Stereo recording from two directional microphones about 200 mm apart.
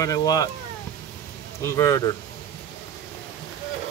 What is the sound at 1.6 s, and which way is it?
Speech, 15° left (ahead or behind).